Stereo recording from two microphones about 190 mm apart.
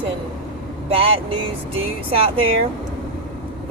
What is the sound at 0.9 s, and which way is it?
Speech, 30° right (ahead or behind).